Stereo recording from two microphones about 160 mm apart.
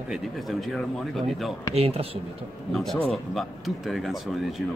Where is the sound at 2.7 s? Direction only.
5° left (ahead or behind).